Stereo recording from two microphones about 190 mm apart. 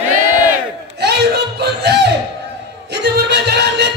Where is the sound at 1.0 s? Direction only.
60° right (ahead or behind).